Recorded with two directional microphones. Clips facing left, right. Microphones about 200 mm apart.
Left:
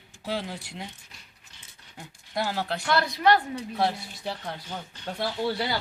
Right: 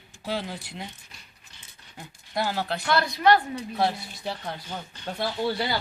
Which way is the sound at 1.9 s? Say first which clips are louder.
Right 1 dB; 5° right (ahead or behind).